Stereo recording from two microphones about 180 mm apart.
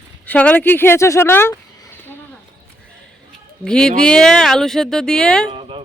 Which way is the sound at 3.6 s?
5° left (ahead or behind).